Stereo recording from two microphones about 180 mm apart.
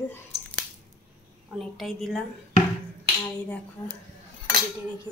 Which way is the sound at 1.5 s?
Centre (ahead or behind).